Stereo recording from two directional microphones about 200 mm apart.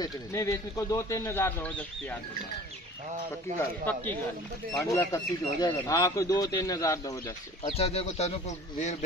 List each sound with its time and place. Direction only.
0.0 s speech: 15° left (ahead or behind)
3.5 s speech: 10° left (ahead or behind)
7.7 s speech: 30° left (ahead or behind)